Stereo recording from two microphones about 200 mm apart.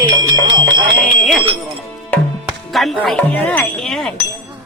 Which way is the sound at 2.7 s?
Centre (ahead or behind).